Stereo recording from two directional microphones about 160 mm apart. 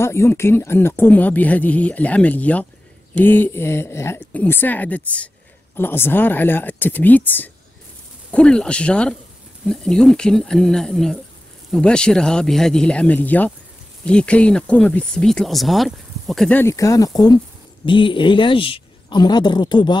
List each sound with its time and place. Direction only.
0.0 s speech: 15° left (ahead or behind)